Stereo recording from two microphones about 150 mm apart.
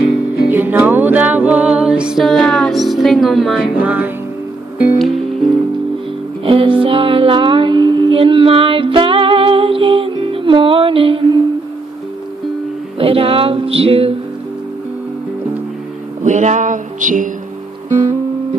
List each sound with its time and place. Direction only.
0.5 s music: 15° right (ahead or behind)
3.8 s music: 10° right (ahead or behind)
4.9 s music: centre (ahead or behind)
6.4 s music: 35° right (ahead or behind)
13.0 s music: 40° right (ahead or behind)
16.3 s music: 55° right (ahead or behind)